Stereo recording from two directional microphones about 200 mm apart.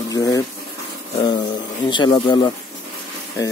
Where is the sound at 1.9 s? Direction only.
25° left (ahead or behind).